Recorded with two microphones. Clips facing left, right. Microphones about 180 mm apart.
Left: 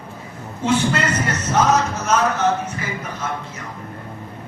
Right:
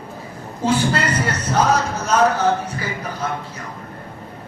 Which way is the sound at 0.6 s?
35° right (ahead or behind).